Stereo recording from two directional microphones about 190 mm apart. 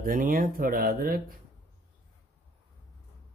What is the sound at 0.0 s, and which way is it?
Speech, 45° right (ahead or behind).